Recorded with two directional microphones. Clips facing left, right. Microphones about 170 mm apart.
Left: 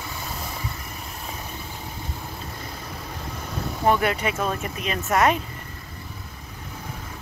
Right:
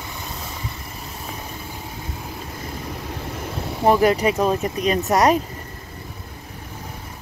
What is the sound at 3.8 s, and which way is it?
Speech, 35° right (ahead or behind).